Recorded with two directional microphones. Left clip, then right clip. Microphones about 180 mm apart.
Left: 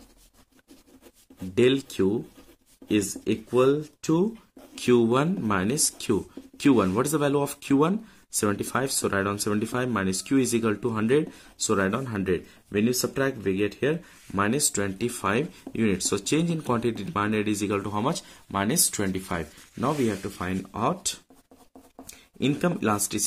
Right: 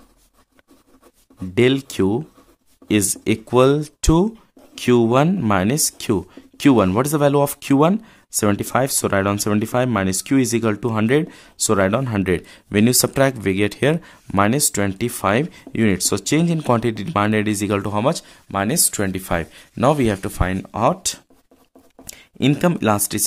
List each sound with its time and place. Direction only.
1.5 s speech: 40° right (ahead or behind)
4.7 s speech: 35° right (ahead or behind)